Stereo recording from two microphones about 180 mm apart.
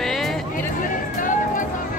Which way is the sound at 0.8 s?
45° left (ahead or behind).